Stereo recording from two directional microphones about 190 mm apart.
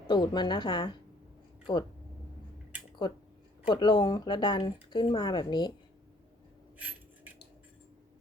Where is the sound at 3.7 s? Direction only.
25° left (ahead or behind).